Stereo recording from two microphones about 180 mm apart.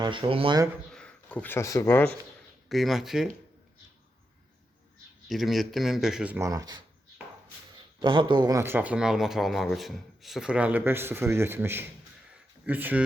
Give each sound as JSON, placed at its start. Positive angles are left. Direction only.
{"t": 0.0, "sound": "speech", "side_deg": -25}
{"t": 0.9, "sound": "speech", "side_deg": 5}
{"t": 2.6, "sound": "speech", "side_deg": 0}
{"t": 5.3, "sound": "speech", "side_deg": 0}
{"t": 8.0, "sound": "speech", "side_deg": -25}